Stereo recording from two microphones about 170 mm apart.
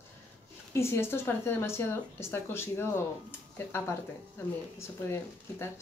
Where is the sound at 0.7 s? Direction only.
15° left (ahead or behind).